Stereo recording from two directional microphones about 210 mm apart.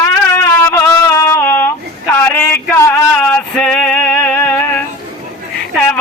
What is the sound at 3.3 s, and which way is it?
Music, 5° left (ahead or behind).